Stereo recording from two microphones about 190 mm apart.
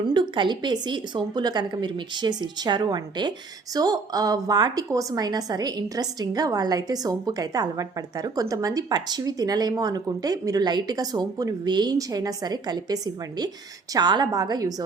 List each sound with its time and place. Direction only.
0.1 s a woman's voice: 25° right (ahead or behind)